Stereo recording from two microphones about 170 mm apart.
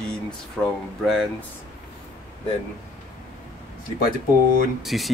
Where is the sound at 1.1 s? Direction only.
Centre (ahead or behind).